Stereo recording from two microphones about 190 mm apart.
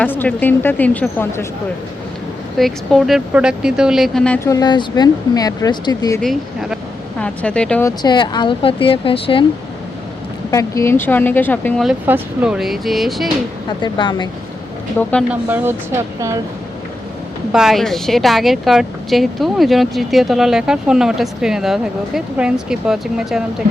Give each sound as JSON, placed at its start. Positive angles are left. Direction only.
{"t": 0.0, "sound": "a woman's voice", "side_deg": 10}
{"t": 2.6, "sound": "speech", "side_deg": 0}
{"t": 4.4, "sound": "speech", "side_deg": 20}
{"t": 6.2, "sound": "speech", "side_deg": 0}
{"t": 10.5, "sound": "a woman's voice", "side_deg": 15}
{"t": 11.9, "sound": "speech", "side_deg": -10}
{"t": 13.8, "sound": "speech", "side_deg": 25}
{"t": 15.3, "sound": "speech", "side_deg": -10}
{"t": 17.5, "sound": "speech", "side_deg": -5}